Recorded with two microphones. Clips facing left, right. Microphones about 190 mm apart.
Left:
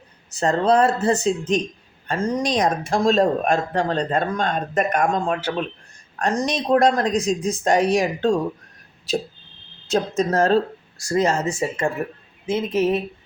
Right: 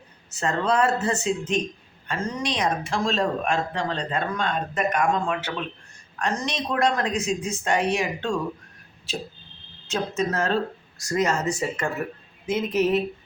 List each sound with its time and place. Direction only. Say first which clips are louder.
0.3 s speech: left 5 dB; 35° left (ahead or behind)
9.9 s speech: left 5 dB; 35° left (ahead or behind)